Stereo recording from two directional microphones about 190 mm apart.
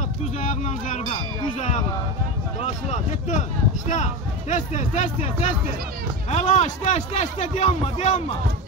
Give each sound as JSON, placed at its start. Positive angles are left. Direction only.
{"t": 0.4, "sound": "a man's voice", "side_deg": 40}